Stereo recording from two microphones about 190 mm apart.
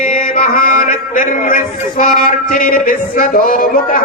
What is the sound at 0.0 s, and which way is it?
A man's voice, 45° left (ahead or behind).